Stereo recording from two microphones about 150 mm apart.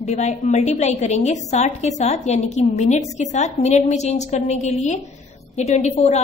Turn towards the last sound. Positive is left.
turn(degrees=45)  # may be behind; listen again after turning